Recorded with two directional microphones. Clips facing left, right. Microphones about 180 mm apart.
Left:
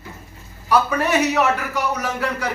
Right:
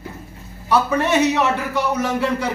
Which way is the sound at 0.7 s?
20° right (ahead or behind).